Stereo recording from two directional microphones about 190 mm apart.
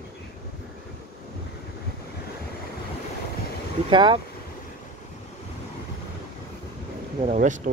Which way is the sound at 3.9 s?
25° right (ahead or behind).